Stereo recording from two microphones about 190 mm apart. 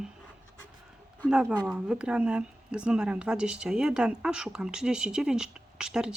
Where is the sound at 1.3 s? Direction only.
5° right (ahead or behind).